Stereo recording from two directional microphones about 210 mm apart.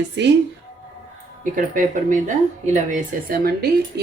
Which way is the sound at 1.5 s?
40° right (ahead or behind).